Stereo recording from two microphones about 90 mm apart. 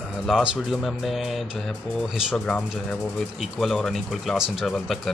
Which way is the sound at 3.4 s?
Centre (ahead or behind).